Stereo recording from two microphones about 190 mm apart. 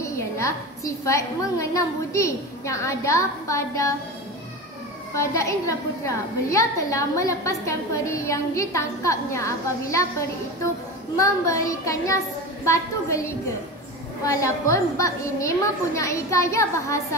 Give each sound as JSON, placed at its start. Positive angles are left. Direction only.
{"t": 0.0, "sound": "a woman's voice", "side_deg": 15}
{"t": 5.1, "sound": "a woman's voice", "side_deg": 15}
{"t": 11.1, "sound": "a woman's voice", "side_deg": 15}
{"t": 14.2, "sound": "a woman's voice", "side_deg": 15}